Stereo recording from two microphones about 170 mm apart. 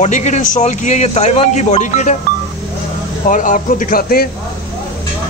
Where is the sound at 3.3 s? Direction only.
50° left (ahead or behind).